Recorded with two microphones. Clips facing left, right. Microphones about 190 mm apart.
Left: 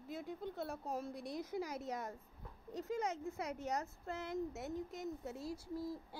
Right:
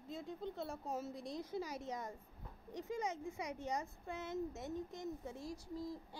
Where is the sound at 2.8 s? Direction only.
15° right (ahead or behind).